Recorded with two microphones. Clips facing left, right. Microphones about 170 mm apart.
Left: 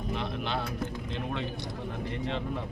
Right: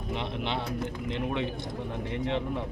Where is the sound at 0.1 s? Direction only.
20° right (ahead or behind).